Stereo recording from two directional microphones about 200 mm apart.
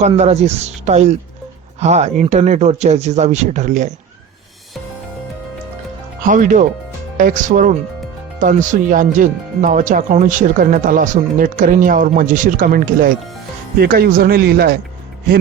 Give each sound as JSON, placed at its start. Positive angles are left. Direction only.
{"t": 0.2, "sound": "speech", "side_deg": -30}
{"t": 6.2, "sound": "speech", "side_deg": -40}